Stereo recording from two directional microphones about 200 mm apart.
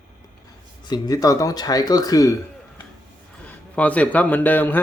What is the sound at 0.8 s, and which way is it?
Speech, 20° left (ahead or behind).